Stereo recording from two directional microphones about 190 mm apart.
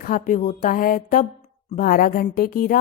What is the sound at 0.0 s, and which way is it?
Speech, 45° left (ahead or behind).